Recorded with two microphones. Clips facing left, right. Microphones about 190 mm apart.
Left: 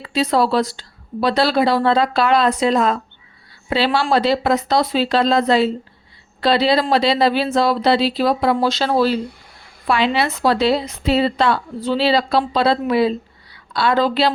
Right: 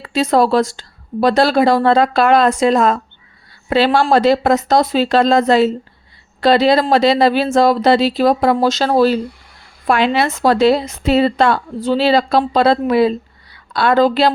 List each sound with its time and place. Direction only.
0.0 s a woman's voice: 45° right (ahead or behind)